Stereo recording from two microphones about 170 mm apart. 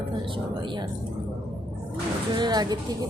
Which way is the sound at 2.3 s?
25° right (ahead or behind).